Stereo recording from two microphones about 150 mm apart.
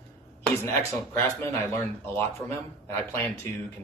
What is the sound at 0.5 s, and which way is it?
Speech, 20° left (ahead or behind).